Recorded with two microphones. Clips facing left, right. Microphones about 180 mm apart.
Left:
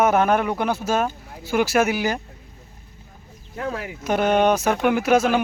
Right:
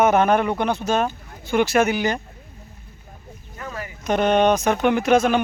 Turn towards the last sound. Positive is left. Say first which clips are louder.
# right 1 dB
turn(degrees=5)  # may be behind; listen again after turning